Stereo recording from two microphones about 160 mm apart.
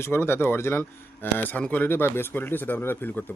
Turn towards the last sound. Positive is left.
turn(degrees=10)  # may be behind; listen again after turning